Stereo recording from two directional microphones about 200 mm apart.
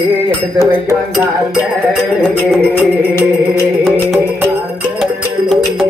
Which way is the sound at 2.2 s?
5° left (ahead or behind).